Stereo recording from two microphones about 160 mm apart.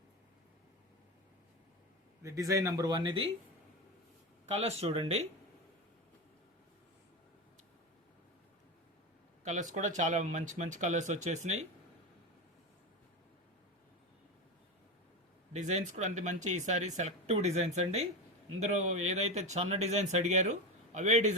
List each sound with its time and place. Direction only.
2.2 s speech: 20° right (ahead or behind)
4.4 s speech: 40° right (ahead or behind)
9.4 s speech: 50° right (ahead or behind)
15.5 s speech: 50° right (ahead or behind)